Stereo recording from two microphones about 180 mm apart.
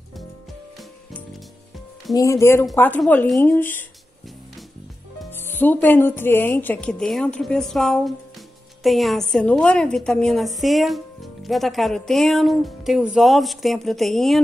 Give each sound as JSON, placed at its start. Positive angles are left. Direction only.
{"t": 2.1, "sound": "a woman's voice", "side_deg": 15}
{"t": 5.5, "sound": "a woman's voice", "side_deg": 10}